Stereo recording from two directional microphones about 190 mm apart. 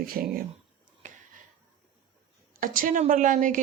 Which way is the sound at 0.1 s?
50° right (ahead or behind).